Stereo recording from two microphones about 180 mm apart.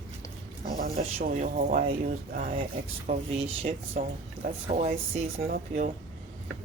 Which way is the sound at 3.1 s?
35° right (ahead or behind).